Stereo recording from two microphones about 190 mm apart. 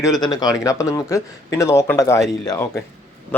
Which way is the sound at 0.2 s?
20° left (ahead or behind).